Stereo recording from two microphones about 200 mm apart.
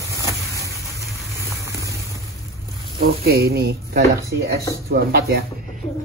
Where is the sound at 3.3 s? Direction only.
50° right (ahead or behind).